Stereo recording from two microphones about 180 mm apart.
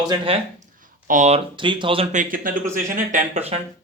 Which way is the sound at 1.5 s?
25° right (ahead or behind).